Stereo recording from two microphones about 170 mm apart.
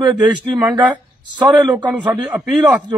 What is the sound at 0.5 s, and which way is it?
A man's voice, 5° right (ahead or behind).